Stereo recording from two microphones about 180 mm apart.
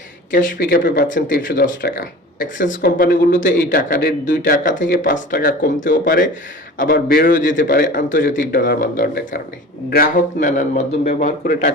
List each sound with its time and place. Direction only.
0.3 s speech: 50° left (ahead or behind)
8.4 s speech: 60° left (ahead or behind)